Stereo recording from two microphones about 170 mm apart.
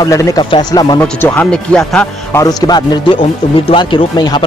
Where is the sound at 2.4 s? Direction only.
25° left (ahead or behind).